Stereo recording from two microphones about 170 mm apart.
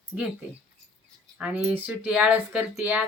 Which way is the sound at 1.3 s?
5° right (ahead or behind).